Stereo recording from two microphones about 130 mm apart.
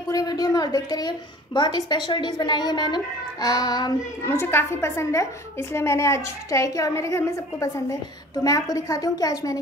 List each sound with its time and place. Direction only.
0.1 s a woman's voice: 30° left (ahead or behind)
4.3 s a woman's voice: 20° left (ahead or behind)